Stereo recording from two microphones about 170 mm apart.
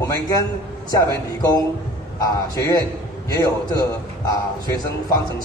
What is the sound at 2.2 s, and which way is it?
A man's voice, 20° left (ahead or behind).